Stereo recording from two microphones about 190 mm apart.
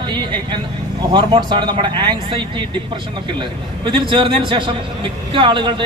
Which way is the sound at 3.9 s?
25° right (ahead or behind).